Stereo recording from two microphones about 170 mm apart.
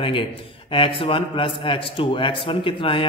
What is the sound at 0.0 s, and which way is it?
A man's voice, 30° left (ahead or behind).